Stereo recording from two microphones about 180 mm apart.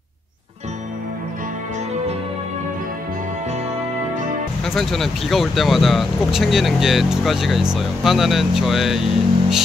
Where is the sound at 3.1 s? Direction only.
40° right (ahead or behind).